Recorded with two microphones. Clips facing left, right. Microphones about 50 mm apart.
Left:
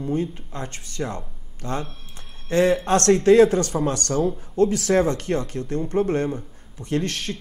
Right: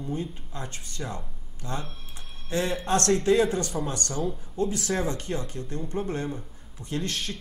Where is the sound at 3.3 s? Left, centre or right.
Left.